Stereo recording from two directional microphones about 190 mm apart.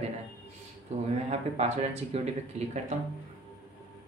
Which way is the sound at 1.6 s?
35° right (ahead or behind).